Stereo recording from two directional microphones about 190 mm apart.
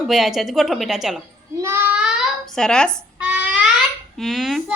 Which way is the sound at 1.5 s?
15° right (ahead or behind).